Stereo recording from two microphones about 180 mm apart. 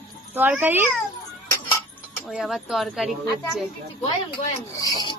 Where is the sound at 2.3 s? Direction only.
Centre (ahead or behind).